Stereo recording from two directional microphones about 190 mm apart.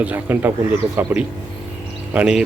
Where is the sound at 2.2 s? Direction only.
5° right (ahead or behind).